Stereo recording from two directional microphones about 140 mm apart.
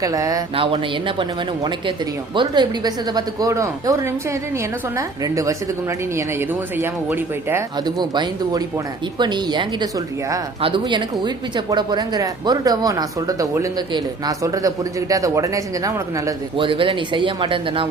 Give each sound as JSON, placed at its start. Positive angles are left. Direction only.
{"t": 0.0, "sound": "speech", "side_deg": -25}
{"t": 0.5, "sound": "speech", "side_deg": -40}
{"t": 7.9, "sound": "speech", "side_deg": -30}
{"t": 10.6, "sound": "speech", "side_deg": -35}
{"t": 16.6, "sound": "speech", "side_deg": -35}